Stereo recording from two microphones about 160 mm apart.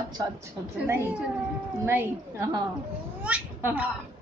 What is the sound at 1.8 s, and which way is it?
A man's voice, 15° right (ahead or behind).